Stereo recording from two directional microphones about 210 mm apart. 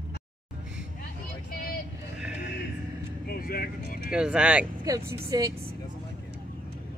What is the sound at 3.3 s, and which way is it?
Speech, 45° left (ahead or behind).